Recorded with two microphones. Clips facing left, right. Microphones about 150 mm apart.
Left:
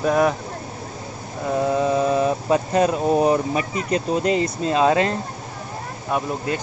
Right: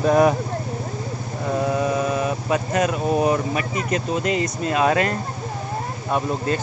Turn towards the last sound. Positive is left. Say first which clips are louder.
# right 1 dB
turn(degrees=10)  # may be behind; listen again after turning